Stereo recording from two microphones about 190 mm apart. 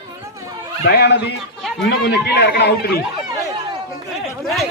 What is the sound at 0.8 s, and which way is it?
A man's voice, 60° left (ahead or behind).